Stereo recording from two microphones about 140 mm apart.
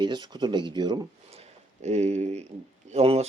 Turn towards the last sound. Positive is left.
turn(degrees=-50)  # may be behind; listen again after turning